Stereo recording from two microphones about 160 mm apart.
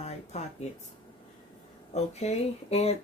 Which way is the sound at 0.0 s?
40° left (ahead or behind).